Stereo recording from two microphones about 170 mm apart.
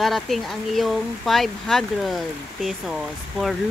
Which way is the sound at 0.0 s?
Centre (ahead or behind).